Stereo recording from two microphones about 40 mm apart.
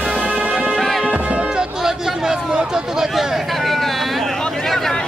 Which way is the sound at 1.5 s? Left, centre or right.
Centre.